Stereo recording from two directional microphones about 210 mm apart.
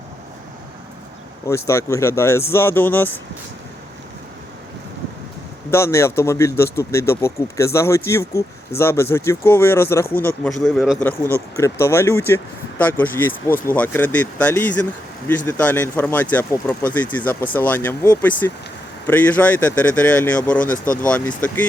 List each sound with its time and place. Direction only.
1.5 s speech: 15° left (ahead or behind)
5.7 s a man's voice: 15° left (ahead or behind)
11.5 s speech: 10° left (ahead or behind)
20.7 s speech: 40° left (ahead or behind)
21.4 s speech: 5° left (ahead or behind)